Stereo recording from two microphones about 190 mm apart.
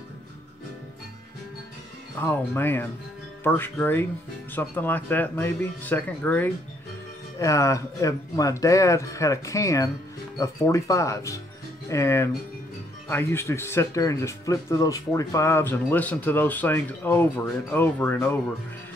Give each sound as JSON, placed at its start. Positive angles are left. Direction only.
{"t": 2.1, "sound": "speech", "side_deg": 10}